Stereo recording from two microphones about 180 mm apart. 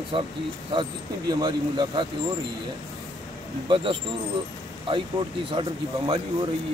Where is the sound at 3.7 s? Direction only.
30° right (ahead or behind).